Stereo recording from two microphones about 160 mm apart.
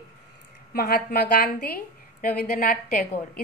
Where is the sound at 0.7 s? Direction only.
70° left (ahead or behind).